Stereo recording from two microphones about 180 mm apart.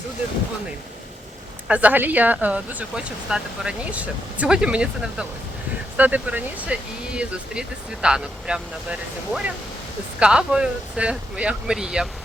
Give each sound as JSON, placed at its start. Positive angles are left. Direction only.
{"t": 1.6, "sound": "speech", "side_deg": -10}